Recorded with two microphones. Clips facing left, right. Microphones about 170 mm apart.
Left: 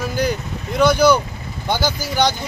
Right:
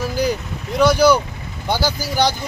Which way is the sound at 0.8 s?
5° right (ahead or behind).